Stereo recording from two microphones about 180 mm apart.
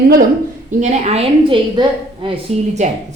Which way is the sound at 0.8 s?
40° right (ahead or behind).